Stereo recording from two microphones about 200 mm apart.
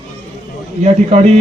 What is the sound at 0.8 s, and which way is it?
Speech, 35° right (ahead or behind).